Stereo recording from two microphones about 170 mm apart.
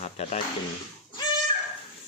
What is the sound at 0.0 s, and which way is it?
Speech, 45° left (ahead or behind).